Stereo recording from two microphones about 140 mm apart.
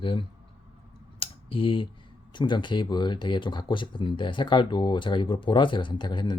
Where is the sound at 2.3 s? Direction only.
35° left (ahead or behind).